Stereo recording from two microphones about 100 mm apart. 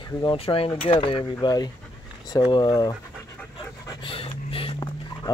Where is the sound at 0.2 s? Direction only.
60° left (ahead or behind).